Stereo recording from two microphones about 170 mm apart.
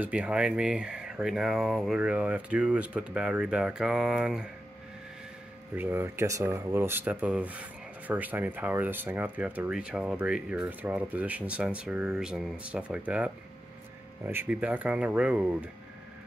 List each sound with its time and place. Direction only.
0.0 s speech: 5° right (ahead or behind)
5.8 s speech: 15° right (ahead or behind)